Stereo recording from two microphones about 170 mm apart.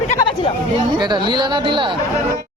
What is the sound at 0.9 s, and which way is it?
Speech, 25° right (ahead or behind).